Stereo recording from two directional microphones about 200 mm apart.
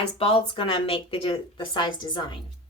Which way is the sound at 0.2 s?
30° left (ahead or behind).